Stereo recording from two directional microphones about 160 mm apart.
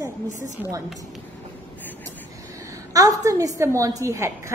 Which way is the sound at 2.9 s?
20° right (ahead or behind).